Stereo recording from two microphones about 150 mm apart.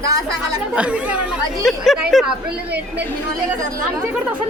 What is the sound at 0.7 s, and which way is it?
Speech, 10° right (ahead or behind).